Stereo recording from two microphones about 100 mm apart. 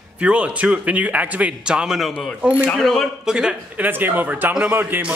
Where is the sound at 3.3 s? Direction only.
10° right (ahead or behind).